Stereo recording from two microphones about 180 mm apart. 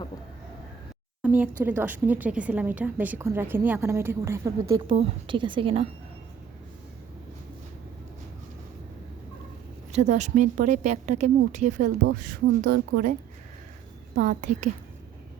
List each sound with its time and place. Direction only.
1.2 s a woman's voice: 10° right (ahead or behind)
4.9 s a woman's voice: 30° right (ahead or behind)
9.9 s speech: 40° right (ahead or behind)
14.2 s speech: 45° right (ahead or behind)